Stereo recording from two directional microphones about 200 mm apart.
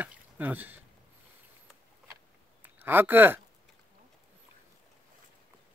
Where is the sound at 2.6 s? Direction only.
10° right (ahead or behind).